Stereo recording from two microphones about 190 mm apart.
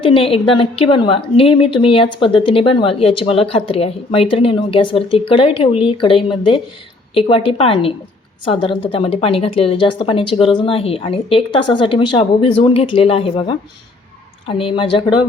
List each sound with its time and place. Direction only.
0.0 s a woman's voice: 30° left (ahead or behind)